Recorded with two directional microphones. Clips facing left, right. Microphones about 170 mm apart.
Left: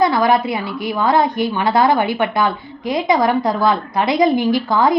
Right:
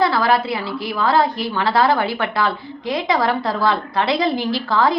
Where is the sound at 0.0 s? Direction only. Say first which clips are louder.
Left 3 dB; 20° left (ahead or behind).